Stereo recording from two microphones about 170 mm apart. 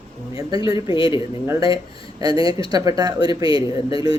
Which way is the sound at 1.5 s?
20° right (ahead or behind).